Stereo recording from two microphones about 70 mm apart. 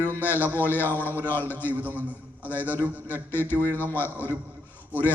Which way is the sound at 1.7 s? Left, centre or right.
Right.